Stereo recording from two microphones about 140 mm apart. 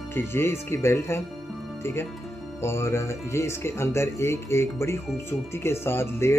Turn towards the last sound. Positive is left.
turn(degrees=20)  # may be behind; listen again after turning